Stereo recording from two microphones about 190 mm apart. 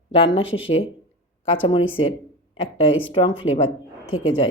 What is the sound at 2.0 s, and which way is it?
Speech, 25° left (ahead or behind).